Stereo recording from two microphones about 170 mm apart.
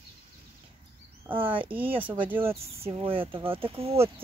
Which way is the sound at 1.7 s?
10° right (ahead or behind).